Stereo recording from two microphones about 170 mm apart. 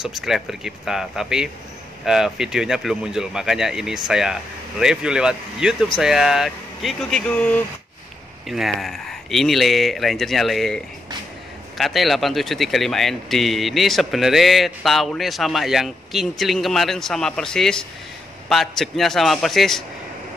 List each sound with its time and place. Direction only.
0.0 s speech: centre (ahead or behind)
11.8 s speech: centre (ahead or behind)